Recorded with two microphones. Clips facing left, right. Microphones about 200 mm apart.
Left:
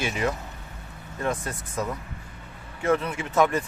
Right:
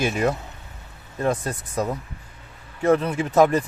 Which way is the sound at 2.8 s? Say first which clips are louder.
Right 5 dB; 35° right (ahead or behind).